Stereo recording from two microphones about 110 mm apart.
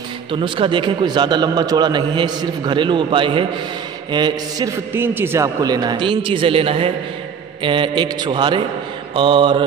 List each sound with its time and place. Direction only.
0.3 s a man's voice: 50° right (ahead or behind)
4.6 s a man's voice: 20° right (ahead or behind)
5.6 s a man's voice: 40° right (ahead or behind)